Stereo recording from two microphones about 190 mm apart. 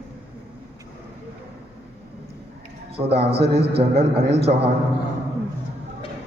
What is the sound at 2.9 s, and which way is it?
A man's voice, 30° right (ahead or behind).